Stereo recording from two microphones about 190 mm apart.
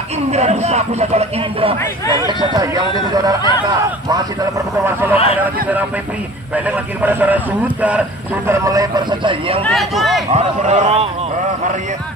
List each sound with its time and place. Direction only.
0.3 s speech: 35° right (ahead or behind)
2.2 s a man's voice: 20° right (ahead or behind)
5.1 s speech: 30° left (ahead or behind)
5.4 s a man's voice: 10° right (ahead or behind); by 9.6 s 25° right (ahead or behind)
9.6 s speech: centre (ahead or behind)
10.3 s speech: 40° right (ahead or behind)